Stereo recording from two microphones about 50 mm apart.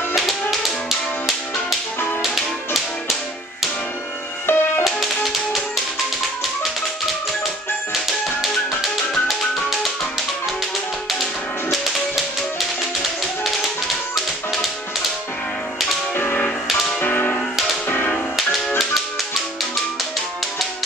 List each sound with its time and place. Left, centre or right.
0.1 s tap: centre
4.5 s music: left
4.8 s tap: centre
12.5 s tap: centre
14.1 s music: centre
16.2 s music: left